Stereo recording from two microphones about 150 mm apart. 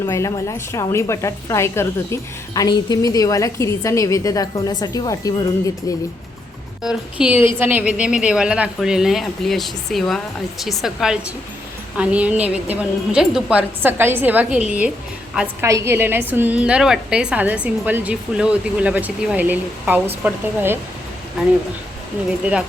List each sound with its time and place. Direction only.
0.0 s a woman's voice: 20° left (ahead or behind)
6.8 s a woman's voice: 5° right (ahead or behind)
15.6 s a woman's voice: 20° right (ahead or behind)